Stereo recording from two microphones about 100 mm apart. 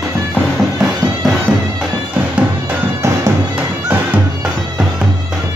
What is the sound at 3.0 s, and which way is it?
Bagpipes, 30° right (ahead or behind).